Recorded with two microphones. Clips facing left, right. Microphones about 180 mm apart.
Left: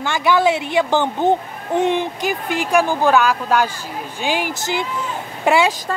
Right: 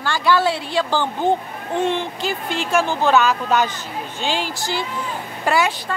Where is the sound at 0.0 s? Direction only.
20° left (ahead or behind).